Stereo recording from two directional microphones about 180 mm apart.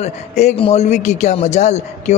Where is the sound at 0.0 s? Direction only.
40° left (ahead or behind).